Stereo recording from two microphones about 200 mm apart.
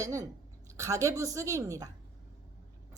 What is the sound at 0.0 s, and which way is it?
Speech, 15° right (ahead or behind).